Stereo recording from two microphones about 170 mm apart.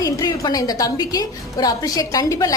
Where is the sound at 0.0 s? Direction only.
20° left (ahead or behind).